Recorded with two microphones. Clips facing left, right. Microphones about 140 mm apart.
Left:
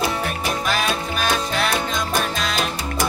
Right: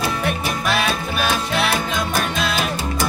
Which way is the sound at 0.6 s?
5° right (ahead or behind).